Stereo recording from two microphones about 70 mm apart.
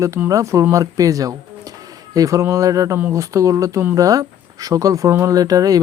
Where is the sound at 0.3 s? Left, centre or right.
Right.